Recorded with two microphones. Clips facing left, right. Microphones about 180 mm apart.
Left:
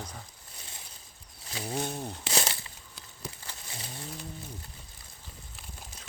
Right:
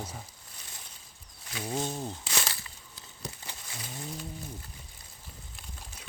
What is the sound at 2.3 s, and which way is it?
Crumpling, 30° left (ahead or behind).